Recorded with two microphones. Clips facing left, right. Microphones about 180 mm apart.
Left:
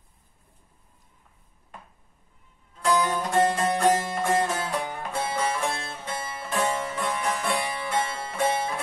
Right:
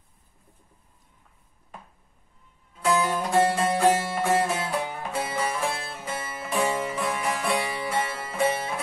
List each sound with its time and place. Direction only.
2.8 s music: 5° right (ahead or behind)
7.5 s music: 15° right (ahead or behind)
8.2 s music: centre (ahead or behind)